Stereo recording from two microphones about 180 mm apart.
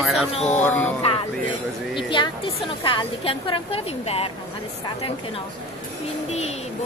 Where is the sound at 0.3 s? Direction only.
35° left (ahead or behind).